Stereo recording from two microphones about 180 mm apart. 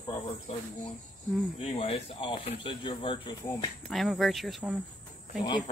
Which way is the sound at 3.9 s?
Centre (ahead or behind).